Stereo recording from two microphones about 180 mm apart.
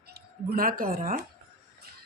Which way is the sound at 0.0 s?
60° right (ahead or behind).